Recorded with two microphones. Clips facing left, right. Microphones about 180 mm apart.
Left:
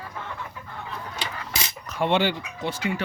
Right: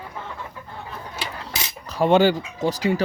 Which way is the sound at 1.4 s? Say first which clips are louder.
Right 1 dB; 35° right (ahead or behind).